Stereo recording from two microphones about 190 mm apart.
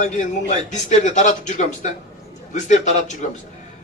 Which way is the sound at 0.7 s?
40° left (ahead or behind).